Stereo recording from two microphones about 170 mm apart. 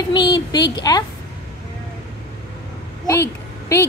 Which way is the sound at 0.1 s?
25° left (ahead or behind).